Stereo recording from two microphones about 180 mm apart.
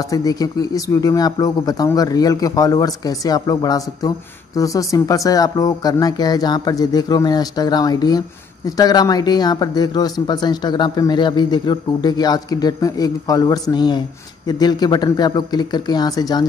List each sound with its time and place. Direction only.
0.1 s speech: 20° left (ahead or behind)